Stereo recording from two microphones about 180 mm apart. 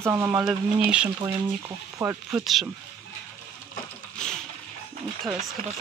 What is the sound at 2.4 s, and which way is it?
Speech, centre (ahead or behind).